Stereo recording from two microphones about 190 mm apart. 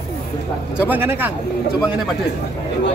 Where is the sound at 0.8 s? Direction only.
10° right (ahead or behind).